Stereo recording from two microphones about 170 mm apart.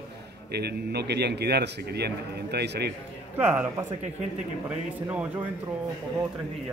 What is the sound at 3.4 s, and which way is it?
Speech, 10° right (ahead or behind).